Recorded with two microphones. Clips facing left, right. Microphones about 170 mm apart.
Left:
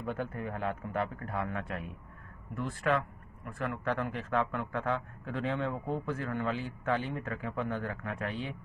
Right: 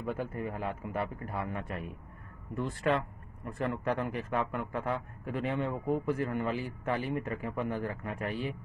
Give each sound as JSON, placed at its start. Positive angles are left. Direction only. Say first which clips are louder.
{"t": 0.0, "sound": "a man's voice", "louder": "right 1 dB", "side_deg": 0}
{"t": 2.5, "sound": "a man's voice", "louder": "right 1 dB", "side_deg": -20}